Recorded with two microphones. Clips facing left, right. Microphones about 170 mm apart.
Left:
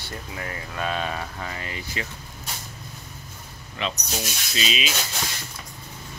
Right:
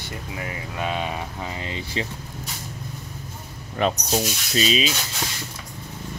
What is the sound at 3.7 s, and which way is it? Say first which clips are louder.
Speech: right 8 dB; 45° right (ahead or behind).